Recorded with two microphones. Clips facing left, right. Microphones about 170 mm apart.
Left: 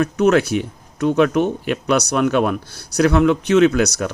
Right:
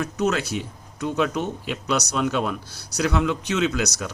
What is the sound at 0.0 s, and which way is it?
Speech, 60° left (ahead or behind).